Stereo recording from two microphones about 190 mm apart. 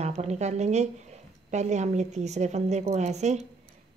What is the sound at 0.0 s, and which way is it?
A woman's voice, 35° right (ahead or behind).